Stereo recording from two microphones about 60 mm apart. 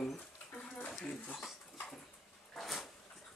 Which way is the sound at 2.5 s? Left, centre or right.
Centre.